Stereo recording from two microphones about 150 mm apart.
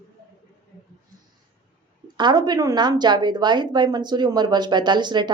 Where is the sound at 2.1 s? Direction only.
30° right (ahead or behind).